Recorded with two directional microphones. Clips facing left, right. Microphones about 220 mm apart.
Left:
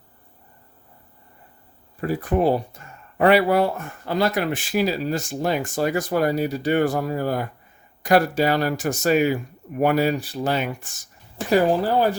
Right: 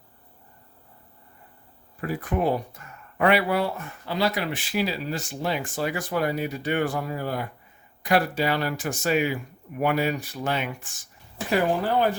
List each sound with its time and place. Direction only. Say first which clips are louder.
2.0 s speech: left 5 dB; 35° left (ahead or behind)